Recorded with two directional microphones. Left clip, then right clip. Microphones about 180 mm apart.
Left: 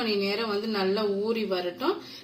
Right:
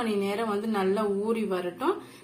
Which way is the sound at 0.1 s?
Centre (ahead or behind).